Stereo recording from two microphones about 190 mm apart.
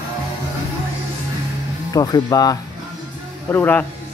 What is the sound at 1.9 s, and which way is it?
Speech, 20° left (ahead or behind).